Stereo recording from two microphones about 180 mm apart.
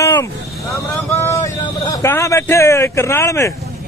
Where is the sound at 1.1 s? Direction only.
15° left (ahead or behind).